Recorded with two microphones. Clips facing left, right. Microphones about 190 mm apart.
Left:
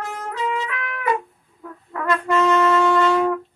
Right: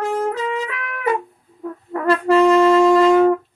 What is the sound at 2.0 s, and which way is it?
Brass instrument, 30° right (ahead or behind).